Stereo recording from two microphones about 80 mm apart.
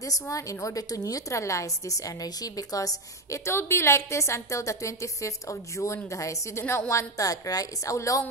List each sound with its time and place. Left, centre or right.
0.0 s a woman's voice: left